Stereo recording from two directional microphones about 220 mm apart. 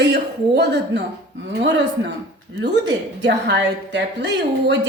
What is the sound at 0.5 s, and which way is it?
A woman's voice, 50° right (ahead or behind).